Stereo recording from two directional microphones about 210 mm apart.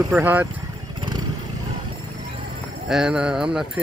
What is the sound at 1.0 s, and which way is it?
Vehicle, 20° right (ahead or behind).